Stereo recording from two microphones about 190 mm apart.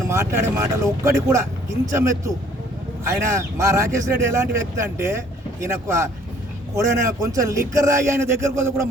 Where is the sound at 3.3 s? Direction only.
15° right (ahead or behind).